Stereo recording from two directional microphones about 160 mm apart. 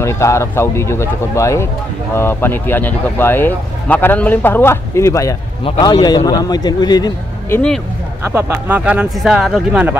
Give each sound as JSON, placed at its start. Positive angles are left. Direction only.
{"t": 0.0, "sound": "speech", "side_deg": 20}
{"t": 5.6, "sound": "speech", "side_deg": 30}
{"t": 7.4, "sound": "speech", "side_deg": 15}
{"t": 8.2, "sound": "speech", "side_deg": -15}